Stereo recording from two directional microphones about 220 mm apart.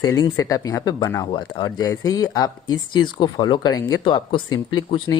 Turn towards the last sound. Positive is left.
turn(degrees=20)  # may be behind; listen again after turning